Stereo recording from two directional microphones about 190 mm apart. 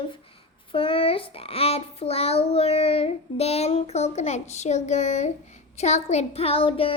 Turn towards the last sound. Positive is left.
turn(degrees=30)  # may be behind; listen again after turning